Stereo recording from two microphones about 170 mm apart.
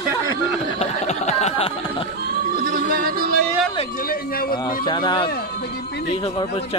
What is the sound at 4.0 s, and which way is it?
Speech, 60° left (ahead or behind).